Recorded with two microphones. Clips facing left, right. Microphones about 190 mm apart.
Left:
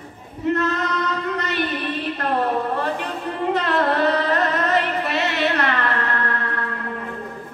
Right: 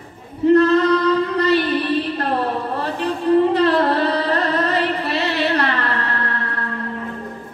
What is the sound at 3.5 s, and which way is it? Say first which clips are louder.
Music: right 4 dB; 35° right (ahead or behind).